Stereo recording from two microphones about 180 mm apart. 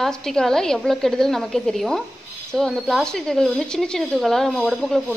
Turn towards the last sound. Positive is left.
turn(degrees=0)  # may be behind; listen again after turning